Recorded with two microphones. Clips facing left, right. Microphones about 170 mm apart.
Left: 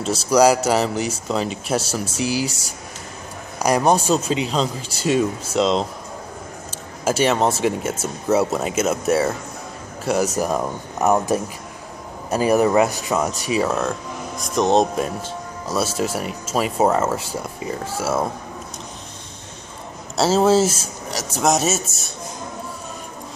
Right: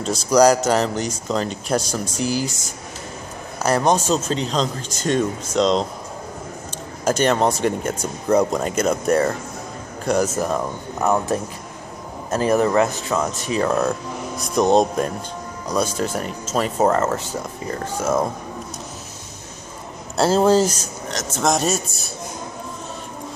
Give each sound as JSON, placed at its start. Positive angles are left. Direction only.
{"t": 0.0, "sound": "speech", "side_deg": 5}
{"t": 3.6, "sound": "speech", "side_deg": 10}
{"t": 7.1, "sound": "speech", "side_deg": 5}
{"t": 20.2, "sound": "speech", "side_deg": 5}